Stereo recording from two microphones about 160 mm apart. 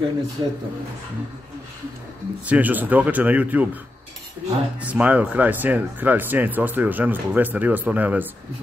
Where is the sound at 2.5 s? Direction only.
10° right (ahead or behind).